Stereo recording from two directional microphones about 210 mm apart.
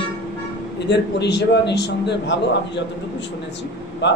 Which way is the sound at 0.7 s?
55° left (ahead or behind).